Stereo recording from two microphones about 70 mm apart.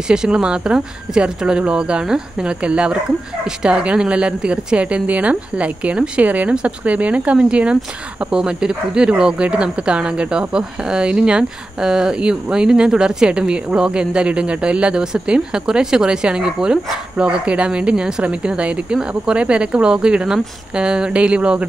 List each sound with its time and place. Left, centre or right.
0.1 s speech: centre